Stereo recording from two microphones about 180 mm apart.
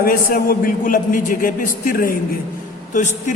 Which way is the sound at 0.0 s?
55° left (ahead or behind).